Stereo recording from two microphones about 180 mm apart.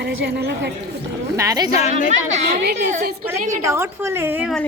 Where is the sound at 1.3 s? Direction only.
20° right (ahead or behind).